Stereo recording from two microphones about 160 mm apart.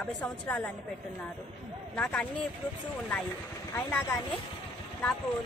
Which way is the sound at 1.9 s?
10° left (ahead or behind).